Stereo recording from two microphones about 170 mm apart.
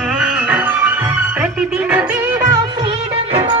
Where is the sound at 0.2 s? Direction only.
10° right (ahead or behind).